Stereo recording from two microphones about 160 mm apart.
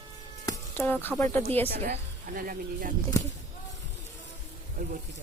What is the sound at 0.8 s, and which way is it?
Speech, 10° left (ahead or behind).